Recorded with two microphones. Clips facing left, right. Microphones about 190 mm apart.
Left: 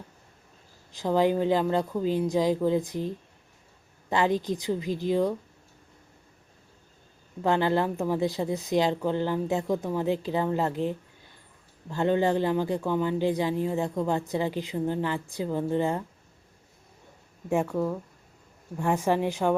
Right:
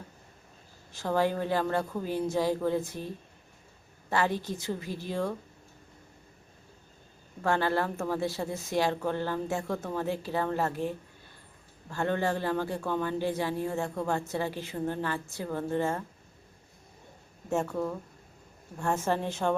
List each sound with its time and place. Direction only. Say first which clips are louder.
0.9 s speech: left 4 dB; 15° left (ahead or behind)
4.1 s speech: left 4 dB; 20° left (ahead or behind)
7.4 s speech: left 4 dB; 20° left (ahead or behind)
18.8 s speech: left 4 dB; 15° left (ahead or behind)